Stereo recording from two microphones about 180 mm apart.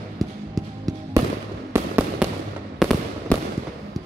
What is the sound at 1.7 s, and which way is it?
Fireworks, 10° right (ahead or behind).